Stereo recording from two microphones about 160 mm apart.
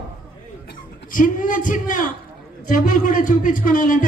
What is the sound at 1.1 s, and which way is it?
A man's voice, 55° left (ahead or behind).